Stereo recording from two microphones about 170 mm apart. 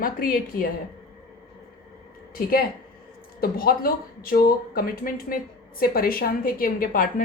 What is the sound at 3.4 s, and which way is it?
Speech, 60° left (ahead or behind).